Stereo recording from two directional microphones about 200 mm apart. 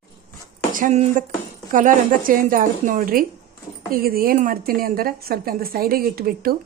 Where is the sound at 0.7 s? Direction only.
40° right (ahead or behind).